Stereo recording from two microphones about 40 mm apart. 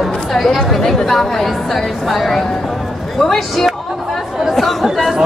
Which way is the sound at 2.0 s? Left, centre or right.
Centre.